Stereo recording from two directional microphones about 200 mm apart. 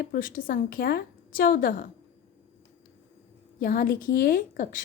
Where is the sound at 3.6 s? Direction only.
45° left (ahead or behind).